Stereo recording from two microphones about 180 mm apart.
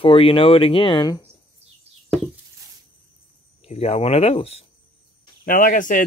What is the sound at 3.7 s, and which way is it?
Speech, 35° left (ahead or behind).